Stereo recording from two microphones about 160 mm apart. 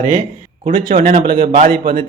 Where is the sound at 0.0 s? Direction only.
15° right (ahead or behind).